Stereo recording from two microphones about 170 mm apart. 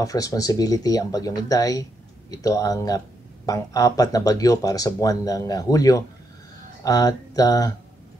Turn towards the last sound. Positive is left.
turn(degrees=20)  # may be behind; listen again after turning